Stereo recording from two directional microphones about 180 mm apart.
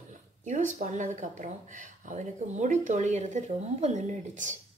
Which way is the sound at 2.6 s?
40° right (ahead or behind).